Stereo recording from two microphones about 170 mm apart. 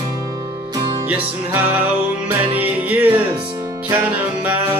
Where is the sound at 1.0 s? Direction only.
10° right (ahead or behind).